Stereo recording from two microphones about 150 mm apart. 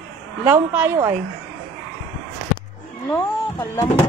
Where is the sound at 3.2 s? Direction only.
15° left (ahead or behind).